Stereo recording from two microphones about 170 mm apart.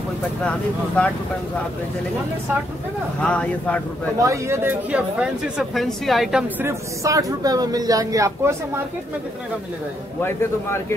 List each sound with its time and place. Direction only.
0.4 s a man's voice: 5° left (ahead or behind)
3.2 s a man's voice: 10° left (ahead or behind)
4.2 s speech: 15° right (ahead or behind); by 6.4 s centre (ahead or behind)
6.6 s speech: 15° right (ahead or behind)
10.2 s a man's voice: 15° left (ahead or behind)